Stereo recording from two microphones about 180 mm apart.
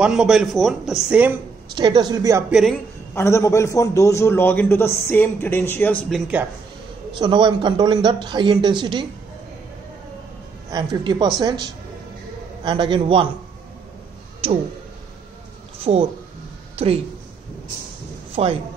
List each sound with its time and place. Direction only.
0.0 s a man's voice: 5° right (ahead or behind)
1.8 s a man's voice: 25° right (ahead or behind)
2.5 s a man's voice: centre (ahead or behind)
3.2 s a man's voice: 15° left (ahead or behind)
6.0 s a man's voice: 5° right (ahead or behind)
7.1 s a man's voice: 25° right (ahead or behind)
10.7 s a man's voice: 25° right (ahead or behind)
14.4 s speech: 35° right (ahead or behind)
15.8 s a woman's voice: 35° right (ahead or behind)
18.3 s speech: 30° right (ahead or behind)